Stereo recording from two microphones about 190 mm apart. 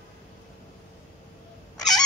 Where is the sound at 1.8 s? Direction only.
Centre (ahead or behind).